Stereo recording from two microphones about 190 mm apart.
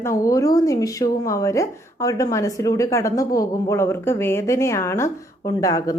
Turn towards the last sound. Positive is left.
turn(degrees=20)  # may be behind; listen again after turning